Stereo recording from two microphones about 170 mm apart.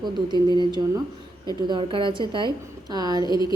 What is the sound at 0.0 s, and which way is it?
Speech, 25° right (ahead or behind).